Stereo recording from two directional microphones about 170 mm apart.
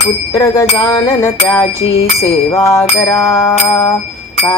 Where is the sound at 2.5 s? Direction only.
20° left (ahead or behind).